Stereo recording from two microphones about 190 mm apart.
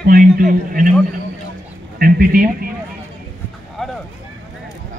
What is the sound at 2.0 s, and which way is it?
Speech, 50° right (ahead or behind).